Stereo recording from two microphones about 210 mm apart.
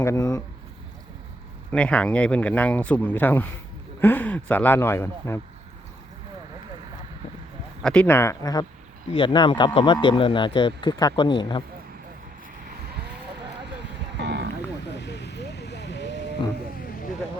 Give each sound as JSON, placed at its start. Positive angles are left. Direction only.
{"t": 0.0, "sound": "speech", "side_deg": 15}
{"t": 1.7, "sound": "speech", "side_deg": 5}
{"t": 7.8, "sound": "speech", "side_deg": 5}
{"t": 14.2, "sound": "a sound", "side_deg": -55}
{"t": 14.9, "sound": "vehicle", "side_deg": 55}